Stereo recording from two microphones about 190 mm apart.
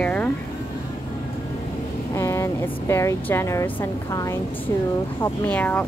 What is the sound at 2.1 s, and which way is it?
Speech, 15° left (ahead or behind).